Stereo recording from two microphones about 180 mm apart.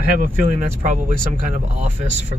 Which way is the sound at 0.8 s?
45° right (ahead or behind).